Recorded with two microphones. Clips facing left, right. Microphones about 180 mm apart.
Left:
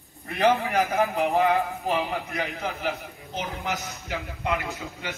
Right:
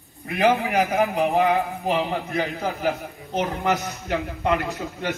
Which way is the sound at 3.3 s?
70° right (ahead or behind).